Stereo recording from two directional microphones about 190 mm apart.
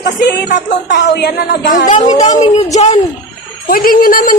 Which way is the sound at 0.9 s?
60° left (ahead or behind).